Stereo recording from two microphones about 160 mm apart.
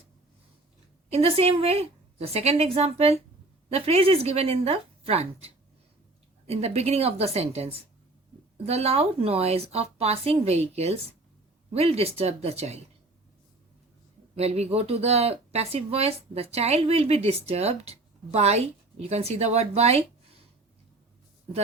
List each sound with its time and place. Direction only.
1.1 s speech: 40° right (ahead or behind)
14.3 s speech: 40° right (ahead or behind)